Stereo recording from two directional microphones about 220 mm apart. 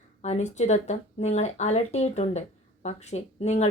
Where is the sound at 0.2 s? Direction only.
30° left (ahead or behind).